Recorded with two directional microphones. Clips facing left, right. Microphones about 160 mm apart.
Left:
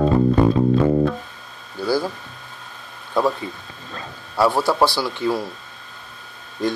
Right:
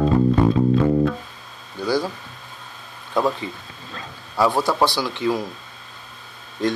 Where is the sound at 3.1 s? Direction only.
5° left (ahead or behind).